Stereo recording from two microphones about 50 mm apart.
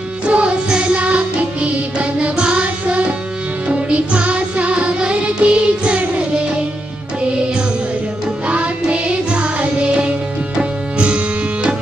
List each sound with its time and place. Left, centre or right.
0.3 s music: right
8.5 s music: right
10.5 s music: centre